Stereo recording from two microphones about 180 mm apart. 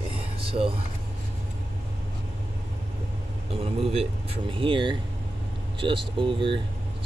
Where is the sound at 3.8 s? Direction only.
35° right (ahead or behind).